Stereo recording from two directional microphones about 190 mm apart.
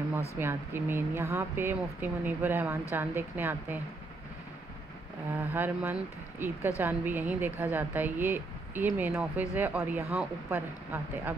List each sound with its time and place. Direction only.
0.4 s a woman's voice: 10° right (ahead or behind)
5.4 s a woman's voice: 10° right (ahead or behind)